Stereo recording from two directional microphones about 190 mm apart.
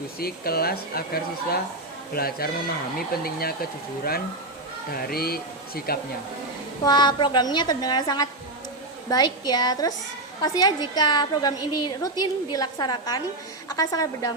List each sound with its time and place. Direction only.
0.2 s speech: 55° left (ahead or behind)
6.8 s a woman's voice: 25° left (ahead or behind)